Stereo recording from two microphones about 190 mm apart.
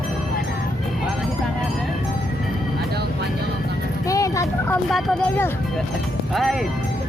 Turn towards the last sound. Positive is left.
turn(degrees=0)  # may be behind; listen again after turning